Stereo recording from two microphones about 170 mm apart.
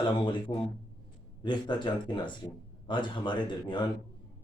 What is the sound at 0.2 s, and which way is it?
Speech, 30° left (ahead or behind).